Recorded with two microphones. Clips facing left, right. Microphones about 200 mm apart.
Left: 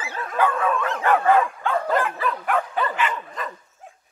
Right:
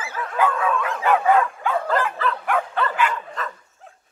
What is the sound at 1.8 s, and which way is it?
Dog, 10° left (ahead or behind).